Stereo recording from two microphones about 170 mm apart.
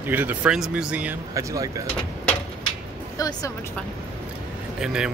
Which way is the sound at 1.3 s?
20° right (ahead or behind).